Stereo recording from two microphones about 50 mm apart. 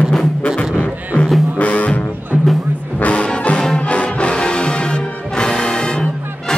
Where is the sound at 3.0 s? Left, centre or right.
Left.